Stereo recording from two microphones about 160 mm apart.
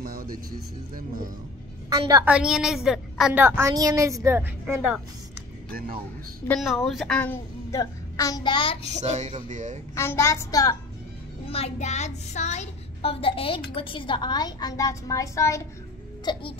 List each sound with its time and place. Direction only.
0.0 s speech: 65° right (ahead or behind)
1.9 s a woman's voice: 25° right (ahead or behind)
2.2 s a woman's voice: 5° right (ahead or behind)
3.4 s speech: 15° right (ahead or behind)
5.7 s speech: 70° right (ahead or behind)
6.6 s a woman's voice: centre (ahead or behind)
7.7 s a child's voice: 20° left (ahead or behind)
9.0 s speech: 45° right (ahead or behind)
9.9 s a child's voice: 15° left (ahead or behind)
11.4 s a woman's voice: 40° left (ahead or behind)